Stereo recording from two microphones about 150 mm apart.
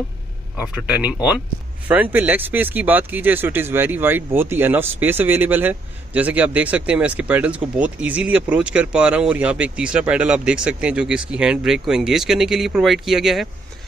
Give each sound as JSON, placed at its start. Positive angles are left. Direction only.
{"t": 0.6, "sound": "speech", "side_deg": -5}